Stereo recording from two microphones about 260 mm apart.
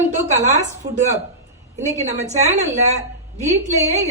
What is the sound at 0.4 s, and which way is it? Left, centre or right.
A woman's voice, right.